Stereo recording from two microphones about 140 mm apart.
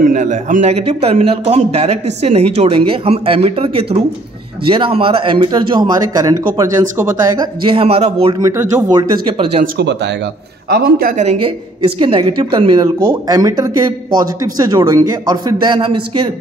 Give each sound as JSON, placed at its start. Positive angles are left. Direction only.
{"t": 0.0, "sound": "a man's voice", "side_deg": -60}
{"t": 7.6, "sound": "speech", "side_deg": -40}
{"t": 8.4, "sound": "speech", "side_deg": -20}
{"t": 10.8, "sound": "speech", "side_deg": -90}
{"t": 11.2, "sound": "speech", "side_deg": -40}